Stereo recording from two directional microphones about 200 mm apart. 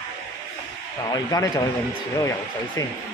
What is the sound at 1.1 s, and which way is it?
Speech, 20° left (ahead or behind).